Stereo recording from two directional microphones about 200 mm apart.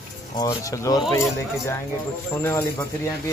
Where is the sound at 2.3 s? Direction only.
10° left (ahead or behind).